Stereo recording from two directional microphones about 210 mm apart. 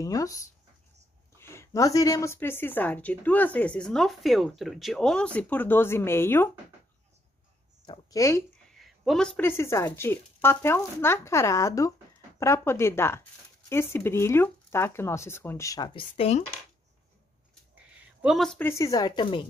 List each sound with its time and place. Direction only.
0.0 s a woman's voice: 15° left (ahead or behind)
7.8 s speech: 20° left (ahead or behind)
8.6 s a woman's voice: centre (ahead or behind); by 16.4 s 30° left (ahead or behind)
17.9 s a sound: centre (ahead or behind)
18.7 s a woman's voice: 15° left (ahead or behind)